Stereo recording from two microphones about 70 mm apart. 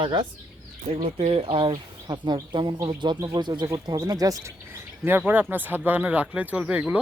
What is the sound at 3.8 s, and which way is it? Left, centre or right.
Speech, right.